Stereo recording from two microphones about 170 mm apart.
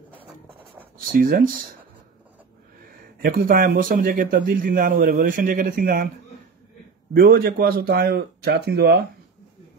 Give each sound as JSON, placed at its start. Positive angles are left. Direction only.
{"t": 0.9, "sound": "a man's voice", "side_deg": -55}
{"t": 3.2, "sound": "a man's voice", "side_deg": -60}
{"t": 7.2, "sound": "speech", "side_deg": -65}